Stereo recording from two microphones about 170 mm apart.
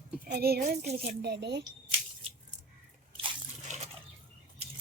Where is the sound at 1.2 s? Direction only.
85° right.